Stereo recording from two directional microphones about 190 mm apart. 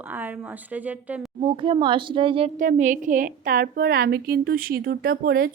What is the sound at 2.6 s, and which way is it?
A woman's voice, 40° right (ahead or behind).